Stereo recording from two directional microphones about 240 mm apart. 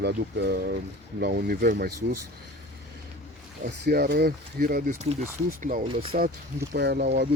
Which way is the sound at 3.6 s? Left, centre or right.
Right.